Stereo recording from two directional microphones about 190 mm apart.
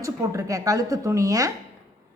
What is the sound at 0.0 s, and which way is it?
A woman's voice, 15° right (ahead or behind).